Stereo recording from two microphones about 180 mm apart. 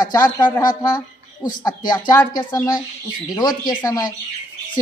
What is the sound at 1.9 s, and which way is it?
Speech, 20° left (ahead or behind).